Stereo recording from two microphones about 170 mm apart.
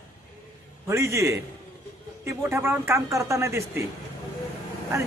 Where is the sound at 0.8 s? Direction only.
15° right (ahead or behind).